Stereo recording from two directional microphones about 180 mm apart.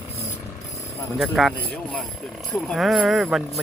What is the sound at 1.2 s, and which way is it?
Speech, centre (ahead or behind).